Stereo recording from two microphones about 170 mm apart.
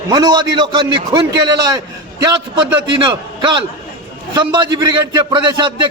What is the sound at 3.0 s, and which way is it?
A man's voice, 30° right (ahead or behind).